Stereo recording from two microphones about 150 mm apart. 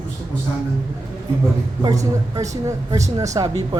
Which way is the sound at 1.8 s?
20° right (ahead or behind).